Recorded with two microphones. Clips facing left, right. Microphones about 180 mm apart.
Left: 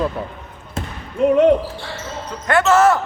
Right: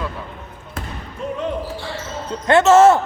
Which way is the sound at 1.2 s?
75° left (ahead or behind).